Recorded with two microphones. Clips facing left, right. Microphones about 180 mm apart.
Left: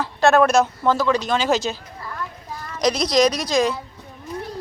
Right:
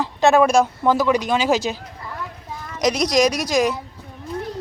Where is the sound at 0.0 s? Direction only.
15° right (ahead or behind).